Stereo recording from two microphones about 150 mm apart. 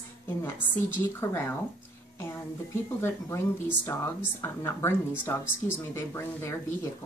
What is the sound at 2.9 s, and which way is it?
Speech, 15° left (ahead or behind).